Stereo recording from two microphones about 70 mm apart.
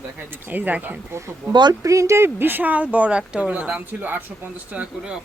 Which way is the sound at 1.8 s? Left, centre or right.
Right.